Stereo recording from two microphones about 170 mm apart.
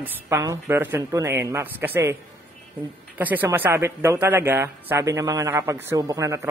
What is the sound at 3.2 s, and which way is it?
A man's voice, 10° right (ahead or behind).